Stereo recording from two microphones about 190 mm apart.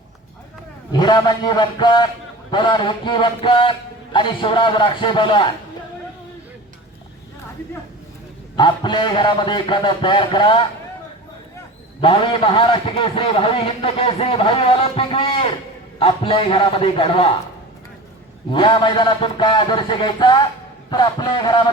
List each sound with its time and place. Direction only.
0.9 s a man's voice: 25° left (ahead or behind)
8.5 s a man's voice: 25° left (ahead or behind)
11.9 s a man's voice: 25° left (ahead or behind)
18.5 s a man's voice: 25° left (ahead or behind)